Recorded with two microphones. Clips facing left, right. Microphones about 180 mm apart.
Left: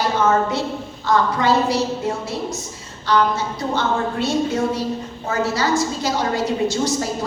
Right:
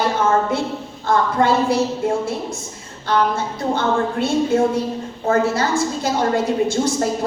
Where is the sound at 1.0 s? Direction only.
55° right (ahead or behind).